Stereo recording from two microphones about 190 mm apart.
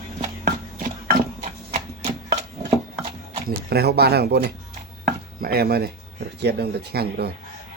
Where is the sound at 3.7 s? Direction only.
55° right (ahead or behind).